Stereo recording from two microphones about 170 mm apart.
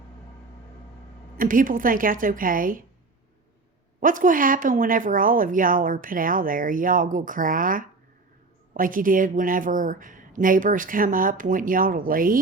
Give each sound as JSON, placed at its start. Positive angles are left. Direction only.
{"t": 1.4, "sound": "speech", "side_deg": -50}
{"t": 4.0, "sound": "speech", "side_deg": -50}